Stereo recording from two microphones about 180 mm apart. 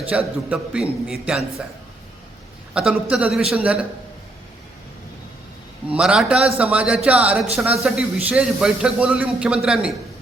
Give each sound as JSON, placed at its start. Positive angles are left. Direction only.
{"t": 0.0, "sound": "a man's voice", "side_deg": -5}
{"t": 2.7, "sound": "a man's voice", "side_deg": -5}
{"t": 5.9, "sound": "a man's voice", "side_deg": -5}